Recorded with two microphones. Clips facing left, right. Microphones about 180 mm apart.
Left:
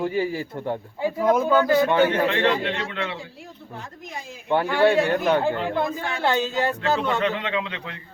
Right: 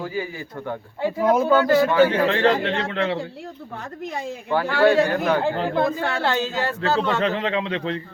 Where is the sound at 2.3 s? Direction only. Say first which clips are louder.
Right 3 dB; 40° right (ahead or behind).